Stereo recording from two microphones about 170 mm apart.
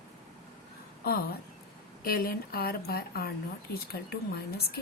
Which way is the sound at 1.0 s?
65° left (ahead or behind).